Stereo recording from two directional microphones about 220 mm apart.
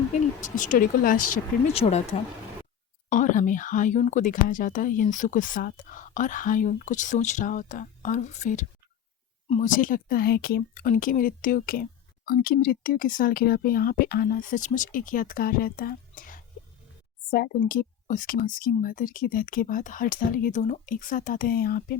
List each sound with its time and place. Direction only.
0.1 s speech: 35° left (ahead or behind)
1.6 s speech: 30° left (ahead or behind)